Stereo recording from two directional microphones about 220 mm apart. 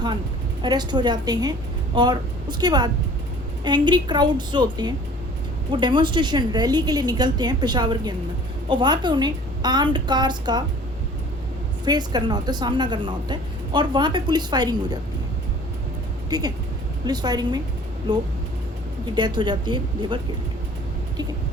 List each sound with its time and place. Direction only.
0.6 s a woman's voice: 20° right (ahead or behind)
11.9 s a woman's voice: 20° right (ahead or behind)
16.3 s a woman's voice: 20° right (ahead or behind)